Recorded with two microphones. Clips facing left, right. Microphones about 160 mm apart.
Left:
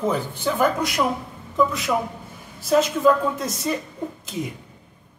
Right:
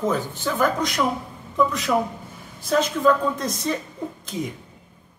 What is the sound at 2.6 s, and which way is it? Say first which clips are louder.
A man's voice: left 2 dB; 5° left (ahead or behind).